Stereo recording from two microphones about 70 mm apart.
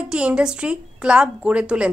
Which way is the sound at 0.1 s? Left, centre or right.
Centre.